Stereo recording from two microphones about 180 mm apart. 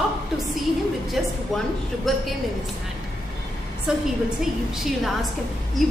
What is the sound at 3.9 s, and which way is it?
A woman's voice, 5° right (ahead or behind).